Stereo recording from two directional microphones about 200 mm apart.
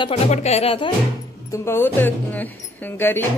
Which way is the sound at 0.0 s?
30° left (ahead or behind).